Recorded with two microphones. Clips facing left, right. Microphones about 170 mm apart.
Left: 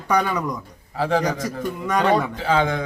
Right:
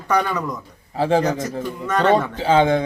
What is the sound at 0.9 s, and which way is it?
Speech, 25° right (ahead or behind).